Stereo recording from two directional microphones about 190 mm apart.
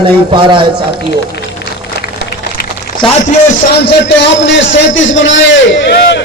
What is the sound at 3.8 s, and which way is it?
A man's voice, 65° left (ahead or behind).